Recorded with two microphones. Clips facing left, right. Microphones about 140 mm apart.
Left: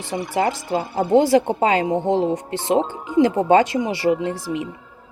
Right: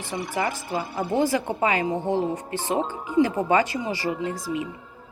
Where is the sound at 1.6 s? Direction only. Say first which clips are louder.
Left 5 dB; 80° left.